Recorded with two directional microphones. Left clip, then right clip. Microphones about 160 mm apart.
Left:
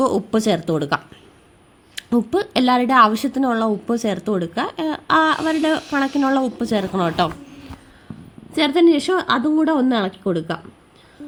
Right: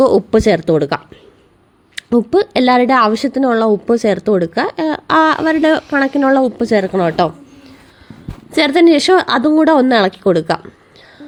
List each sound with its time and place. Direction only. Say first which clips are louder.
0.0 s speech: right 8 dB; 50° right (ahead or behind)
2.0 s speech: right 7 dB; 45° right (ahead or behind)
8.5 s a woman's voice: right 5 dB; 30° right (ahead or behind)